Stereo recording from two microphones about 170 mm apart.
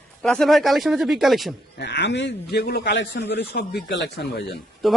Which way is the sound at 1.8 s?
90° left.